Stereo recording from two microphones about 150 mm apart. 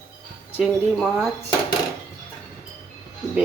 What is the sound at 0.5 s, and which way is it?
Speech, 5° right (ahead or behind).